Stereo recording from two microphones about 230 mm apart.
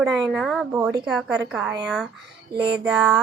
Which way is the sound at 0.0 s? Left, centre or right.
Centre.